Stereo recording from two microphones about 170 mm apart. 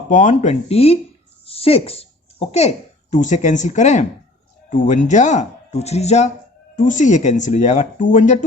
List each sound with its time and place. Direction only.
0.1 s speech: 45° left (ahead or behind)